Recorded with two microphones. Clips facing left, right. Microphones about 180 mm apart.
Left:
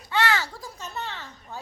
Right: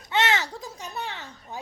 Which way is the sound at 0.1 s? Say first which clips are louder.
Even; 20° right (ahead or behind).